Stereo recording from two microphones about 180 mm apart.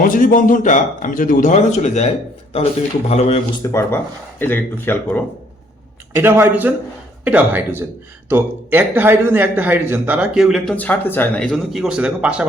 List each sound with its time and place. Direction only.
0.0 s a man's voice: 50° left (ahead or behind)
3.1 s a man's voice: 35° left (ahead or behind)
3.6 s speech: 15° left (ahead or behind)
6.1 s speech: 15° right (ahead or behind)
10.8 s speech: 10° left (ahead or behind); by 12.5 s 5° right (ahead or behind)